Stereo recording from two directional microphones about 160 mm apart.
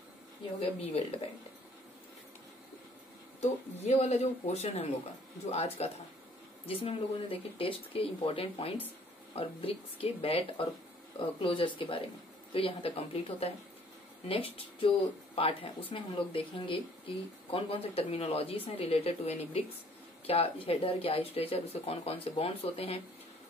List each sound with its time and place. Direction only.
0.6 s speech: 40° left (ahead or behind)
3.3 s speech: 45° left (ahead or behind)